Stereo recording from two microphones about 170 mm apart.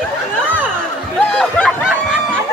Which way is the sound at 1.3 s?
5° left (ahead or behind).